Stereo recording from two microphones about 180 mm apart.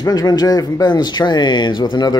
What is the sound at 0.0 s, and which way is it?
Speech, 20° left (ahead or behind).